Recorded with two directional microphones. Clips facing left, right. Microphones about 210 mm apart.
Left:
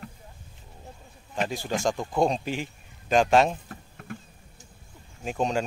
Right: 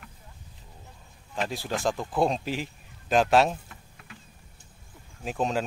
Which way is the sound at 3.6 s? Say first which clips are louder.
Left 10 dB; 45° left (ahead or behind).